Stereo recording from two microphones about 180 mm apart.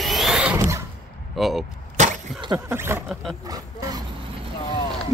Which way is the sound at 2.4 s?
15° right (ahead or behind).